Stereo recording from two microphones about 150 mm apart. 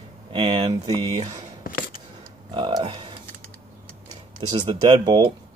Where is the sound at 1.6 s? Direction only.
70° left (ahead or behind).